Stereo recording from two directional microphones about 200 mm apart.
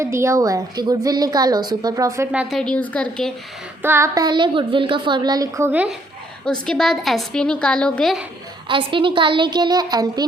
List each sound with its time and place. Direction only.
0.0 s a woman's voice: 15° right (ahead or behind)
2.3 s a woman's voice: 5° right (ahead or behind)
3.8 s a woman's voice: 15° right (ahead or behind); by 8.2 s 5° left (ahead or behind)
8.6 s a woman's voice: 25° right (ahead or behind)